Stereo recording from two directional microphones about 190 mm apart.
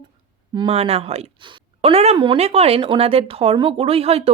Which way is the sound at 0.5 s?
25° right (ahead or behind).